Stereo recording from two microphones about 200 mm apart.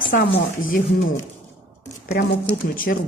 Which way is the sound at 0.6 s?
45° left (ahead or behind).